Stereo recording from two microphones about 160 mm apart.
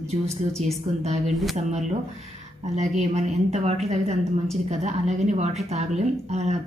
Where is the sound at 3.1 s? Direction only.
45° right (ahead or behind).